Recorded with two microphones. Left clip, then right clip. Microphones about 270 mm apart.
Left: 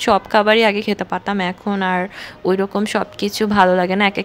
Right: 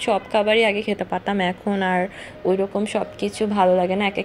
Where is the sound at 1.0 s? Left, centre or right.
Left.